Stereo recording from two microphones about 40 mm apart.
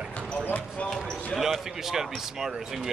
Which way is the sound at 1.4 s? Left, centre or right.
Centre.